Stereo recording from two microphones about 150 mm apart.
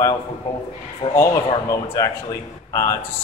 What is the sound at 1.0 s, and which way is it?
Speech, 45° left (ahead or behind).